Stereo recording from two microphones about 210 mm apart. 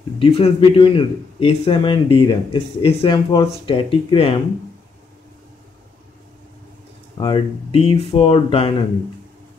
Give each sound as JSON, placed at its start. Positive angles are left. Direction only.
{"t": 0.2, "sound": "a man's voice", "side_deg": 25}
{"t": 7.2, "sound": "a man's voice", "side_deg": 25}